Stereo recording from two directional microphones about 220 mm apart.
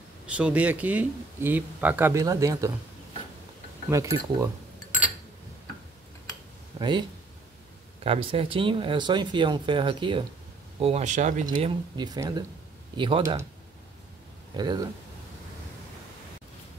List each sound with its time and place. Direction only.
0.3 s speech: 5° right (ahead or behind)
3.9 s speech: 15° right (ahead or behind)
6.8 s speech: 20° right (ahead or behind)
11.4 s speech: 20° right (ahead or behind)
14.6 s speech: 20° right (ahead or behind)